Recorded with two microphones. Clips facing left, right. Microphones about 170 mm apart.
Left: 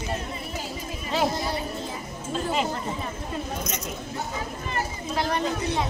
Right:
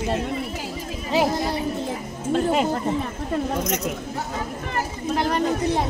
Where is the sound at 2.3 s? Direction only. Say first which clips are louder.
Right 6 dB; 55° right (ahead or behind).